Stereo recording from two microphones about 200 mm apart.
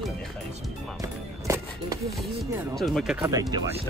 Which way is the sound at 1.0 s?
15° right (ahead or behind).